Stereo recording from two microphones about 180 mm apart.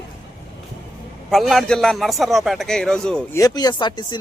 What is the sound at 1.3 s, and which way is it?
A man's voice, centre (ahead or behind).